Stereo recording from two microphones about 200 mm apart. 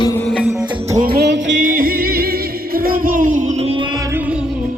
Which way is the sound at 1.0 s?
50° right (ahead or behind).